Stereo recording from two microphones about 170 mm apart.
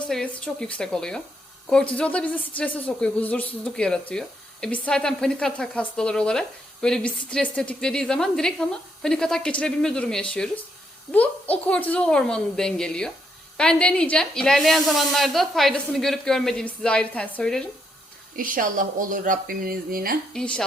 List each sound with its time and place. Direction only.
0.1 s a woman's voice: 5° left (ahead or behind)
18.3 s speech: 55° right (ahead or behind)
20.3 s speech: 5° left (ahead or behind)